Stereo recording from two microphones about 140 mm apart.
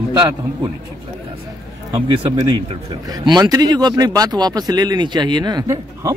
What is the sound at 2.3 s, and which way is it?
Speech, 35° right (ahead or behind).